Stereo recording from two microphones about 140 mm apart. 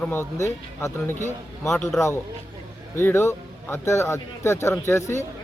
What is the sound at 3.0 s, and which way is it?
A man's voice, 15° left (ahead or behind).